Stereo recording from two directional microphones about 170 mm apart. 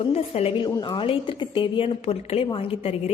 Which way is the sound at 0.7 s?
25° left (ahead or behind).